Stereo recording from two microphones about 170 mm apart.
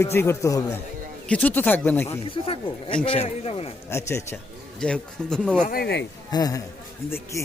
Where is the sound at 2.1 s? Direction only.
35° left (ahead or behind).